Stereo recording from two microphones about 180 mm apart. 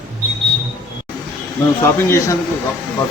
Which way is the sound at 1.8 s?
15° left (ahead or behind).